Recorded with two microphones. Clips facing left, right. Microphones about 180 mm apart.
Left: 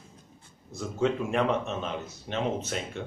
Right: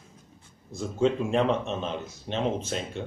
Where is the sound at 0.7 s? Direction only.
25° right (ahead or behind).